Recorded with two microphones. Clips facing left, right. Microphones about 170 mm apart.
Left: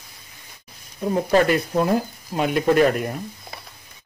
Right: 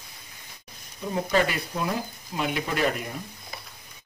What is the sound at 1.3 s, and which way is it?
A man's voice, 50° left (ahead or behind).